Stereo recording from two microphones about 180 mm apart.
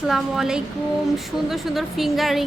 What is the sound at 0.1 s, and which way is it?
A woman's voice, 5° right (ahead or behind).